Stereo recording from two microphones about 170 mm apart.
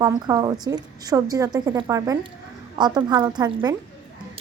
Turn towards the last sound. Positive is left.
turn(degrees=-25)  # may be behind; listen again after turning